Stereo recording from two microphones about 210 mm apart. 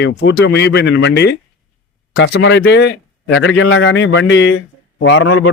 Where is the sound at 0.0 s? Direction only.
55° left (ahead or behind).